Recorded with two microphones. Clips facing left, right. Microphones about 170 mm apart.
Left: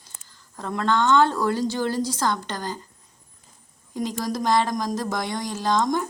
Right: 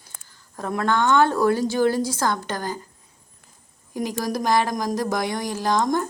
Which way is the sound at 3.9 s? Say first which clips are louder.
Right 1 dB; 5° right (ahead or behind).